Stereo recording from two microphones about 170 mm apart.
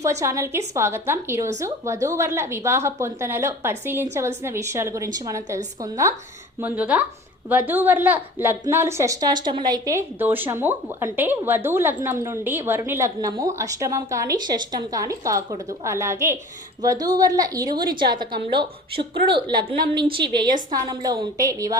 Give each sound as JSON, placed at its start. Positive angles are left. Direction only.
{"t": 0.0, "sound": "a woman's voice", "side_deg": -20}